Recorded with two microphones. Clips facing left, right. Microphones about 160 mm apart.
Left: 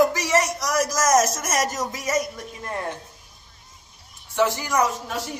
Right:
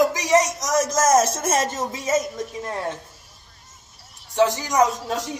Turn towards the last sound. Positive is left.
turn(degrees=-20)  # may be behind; listen again after turning